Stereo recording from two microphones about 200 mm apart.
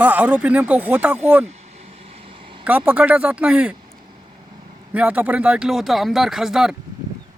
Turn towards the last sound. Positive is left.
turn(degrees=0)  # may be behind; listen again after turning